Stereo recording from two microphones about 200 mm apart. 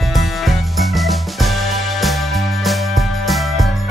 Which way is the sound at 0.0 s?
Centre (ahead or behind).